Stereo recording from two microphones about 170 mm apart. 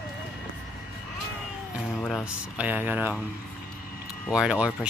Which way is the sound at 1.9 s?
Centre (ahead or behind).